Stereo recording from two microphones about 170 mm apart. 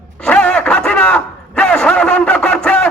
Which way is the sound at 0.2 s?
5° left (ahead or behind).